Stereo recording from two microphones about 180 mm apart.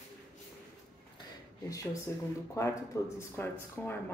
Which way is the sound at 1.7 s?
20° left (ahead or behind).